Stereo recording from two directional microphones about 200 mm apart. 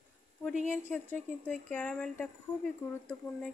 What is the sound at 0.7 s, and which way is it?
Speech, 10° left (ahead or behind).